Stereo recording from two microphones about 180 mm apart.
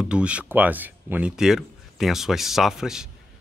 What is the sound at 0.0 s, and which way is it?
Speech, 5° right (ahead or behind).